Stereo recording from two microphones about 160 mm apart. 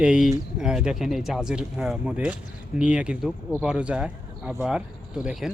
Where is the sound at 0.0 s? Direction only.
5° right (ahead or behind).